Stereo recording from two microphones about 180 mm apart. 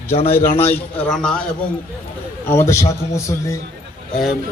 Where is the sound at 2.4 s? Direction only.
15° left (ahead or behind).